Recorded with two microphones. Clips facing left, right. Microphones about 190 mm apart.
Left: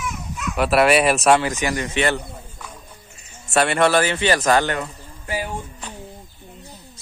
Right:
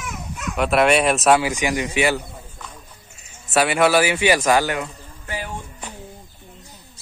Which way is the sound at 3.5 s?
5° right (ahead or behind).